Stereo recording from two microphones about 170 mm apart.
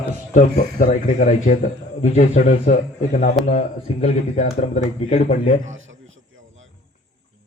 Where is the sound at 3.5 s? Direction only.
40° left (ahead or behind).